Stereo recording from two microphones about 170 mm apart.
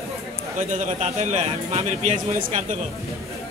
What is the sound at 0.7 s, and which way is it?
Speech, 45° right (ahead or behind).